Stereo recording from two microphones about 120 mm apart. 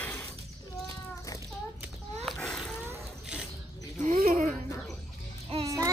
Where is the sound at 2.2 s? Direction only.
5° left (ahead or behind).